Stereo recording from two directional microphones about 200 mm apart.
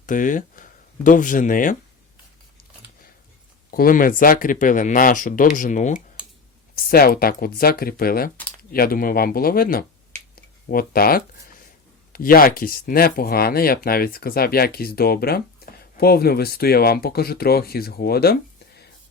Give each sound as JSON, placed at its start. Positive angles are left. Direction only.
{"t": 0.0, "sound": "speech", "side_deg": 40}
{"t": 3.7, "sound": "speech", "side_deg": 45}
{"t": 10.3, "sound": "a sound", "side_deg": 45}
{"t": 12.1, "sound": "speech", "side_deg": 45}